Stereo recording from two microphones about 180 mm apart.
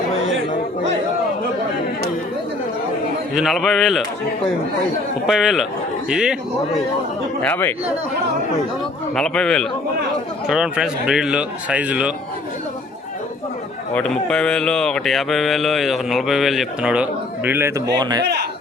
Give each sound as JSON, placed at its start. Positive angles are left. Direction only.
{"t": 3.3, "sound": "speech", "side_deg": 0}
{"t": 5.2, "sound": "speech", "side_deg": 0}
{"t": 7.4, "sound": "speech", "side_deg": 10}
{"t": 9.1, "sound": "speech", "side_deg": 5}
{"t": 13.9, "sound": "speech", "side_deg": 5}
{"t": 17.9, "sound": "a man's voice", "side_deg": -25}
{"t": 18.2, "sound": "a sound", "side_deg": -65}